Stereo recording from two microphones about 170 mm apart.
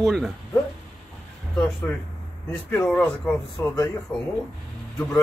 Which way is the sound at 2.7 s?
15° left (ahead or behind).